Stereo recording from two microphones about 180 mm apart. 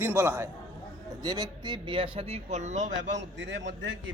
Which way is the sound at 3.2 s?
80° right.